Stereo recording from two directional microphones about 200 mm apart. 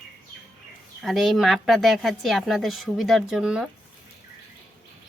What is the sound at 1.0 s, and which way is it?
Speech, centre (ahead or behind).